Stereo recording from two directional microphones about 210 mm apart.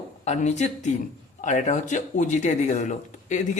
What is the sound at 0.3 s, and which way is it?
Speech, 35° left (ahead or behind).